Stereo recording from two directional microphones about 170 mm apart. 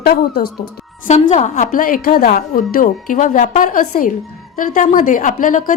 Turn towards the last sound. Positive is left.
turn(degrees=50)  # may be behind; listen again after turning